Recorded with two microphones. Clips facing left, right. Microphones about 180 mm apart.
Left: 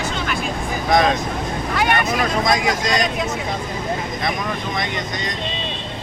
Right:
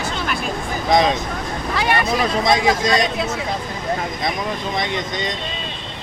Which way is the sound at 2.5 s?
25° right (ahead or behind).